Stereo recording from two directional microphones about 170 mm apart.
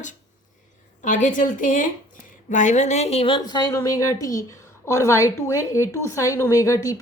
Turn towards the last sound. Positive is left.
turn(degrees=20)  # may be behind; listen again after turning